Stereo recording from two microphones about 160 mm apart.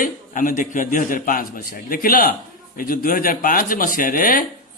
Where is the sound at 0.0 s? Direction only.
55° left (ahead or behind).